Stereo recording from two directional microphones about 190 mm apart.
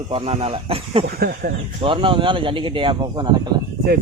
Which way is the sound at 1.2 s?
55° right (ahead or behind).